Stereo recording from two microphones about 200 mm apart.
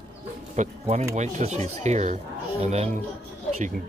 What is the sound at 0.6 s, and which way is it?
Speech, 35° right (ahead or behind).